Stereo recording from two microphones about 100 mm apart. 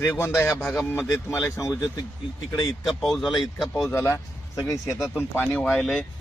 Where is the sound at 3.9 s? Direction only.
30° left (ahead or behind).